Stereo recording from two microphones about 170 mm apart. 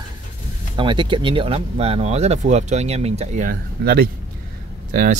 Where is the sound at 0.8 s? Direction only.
30° right (ahead or behind).